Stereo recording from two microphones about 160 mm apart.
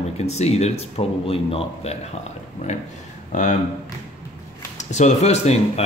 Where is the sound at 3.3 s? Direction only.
50° left (ahead or behind).